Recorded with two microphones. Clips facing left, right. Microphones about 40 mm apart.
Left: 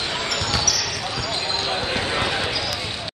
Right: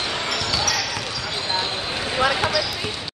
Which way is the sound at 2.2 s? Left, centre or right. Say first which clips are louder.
Right 4 dB; right.